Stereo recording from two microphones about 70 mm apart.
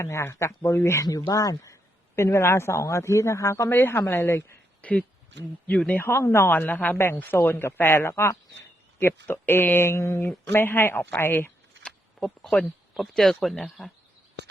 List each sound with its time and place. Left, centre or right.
0.0 s speech: left
1.0 s speech: left
3.7 s speech: left
4.8 s speech: left
5.9 s speech: left
6.5 s speech: left
10.5 s speech: left
11.8 s a sound: centre
13.0 s speech: centre